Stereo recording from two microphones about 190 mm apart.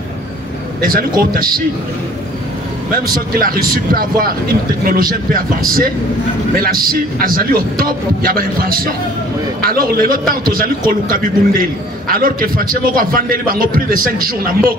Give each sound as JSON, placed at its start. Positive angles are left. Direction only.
{"t": 0.8, "sound": "a man's voice", "side_deg": -50}
{"t": 3.3, "sound": "a man's voice", "side_deg": -50}